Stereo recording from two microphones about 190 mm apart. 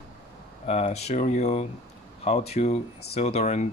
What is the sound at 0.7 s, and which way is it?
Speech, 35° left (ahead or behind).